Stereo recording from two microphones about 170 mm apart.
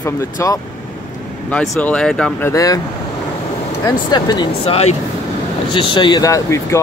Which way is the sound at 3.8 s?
25° left (ahead or behind).